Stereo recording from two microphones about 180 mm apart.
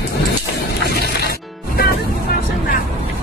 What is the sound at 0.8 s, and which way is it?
Music, 65° left (ahead or behind).